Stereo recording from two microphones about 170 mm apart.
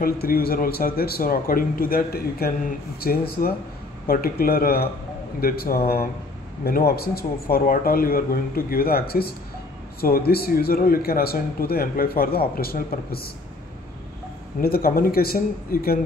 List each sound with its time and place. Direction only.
0.0 s a man's voice: 60° left (ahead or behind)
14.6 s a man's voice: 60° left (ahead or behind)